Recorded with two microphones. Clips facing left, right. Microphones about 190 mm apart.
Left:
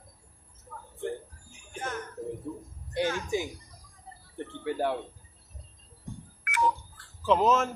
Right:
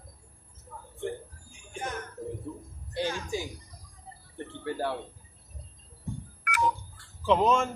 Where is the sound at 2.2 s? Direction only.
5° left (ahead or behind).